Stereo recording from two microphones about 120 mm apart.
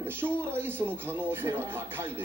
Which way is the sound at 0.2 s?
20° right (ahead or behind).